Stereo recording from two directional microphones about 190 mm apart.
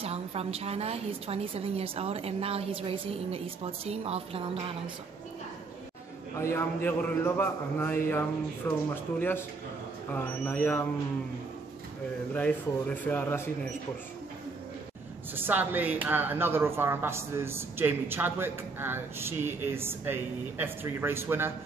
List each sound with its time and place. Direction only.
0.0 s a woman's voice: 30° right (ahead or behind)
6.3 s a man's voice: 15° left (ahead or behind)
10.1 s a man's voice: 10° left (ahead or behind)
12.4 s a man's voice: 10° left (ahead or behind)
15.3 s a woman's voice: 10° right (ahead or behind)